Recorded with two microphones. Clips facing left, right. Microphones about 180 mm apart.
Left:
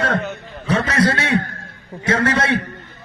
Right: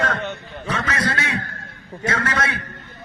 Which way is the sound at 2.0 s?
30° left (ahead or behind).